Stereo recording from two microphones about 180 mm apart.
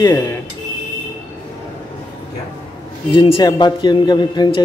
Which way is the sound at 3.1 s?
25° left (ahead or behind).